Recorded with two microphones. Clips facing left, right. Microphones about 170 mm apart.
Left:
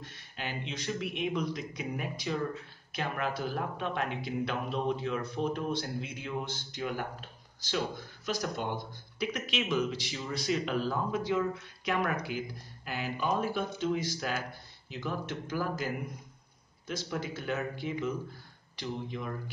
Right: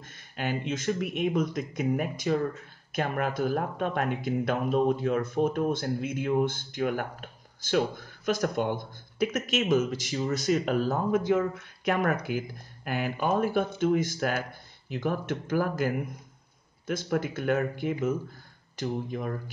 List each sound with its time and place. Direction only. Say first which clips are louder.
0.0 s speech: right 7 dB; 50° right (ahead or behind)